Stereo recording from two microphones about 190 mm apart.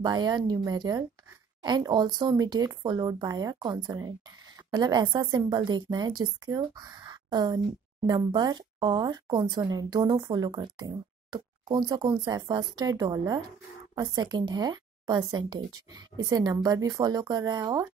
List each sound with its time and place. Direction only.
0.0 s a woman's voice: 20° right (ahead or behind)